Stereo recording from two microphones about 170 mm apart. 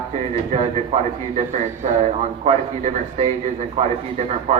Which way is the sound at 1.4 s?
40° right (ahead or behind).